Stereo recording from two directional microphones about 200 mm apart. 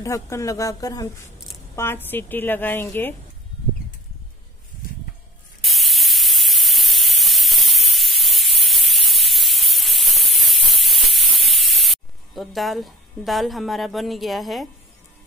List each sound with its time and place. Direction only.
0.0 s a woman's voice: 15° left (ahead or behind)
5.6 s spray: centre (ahead or behind)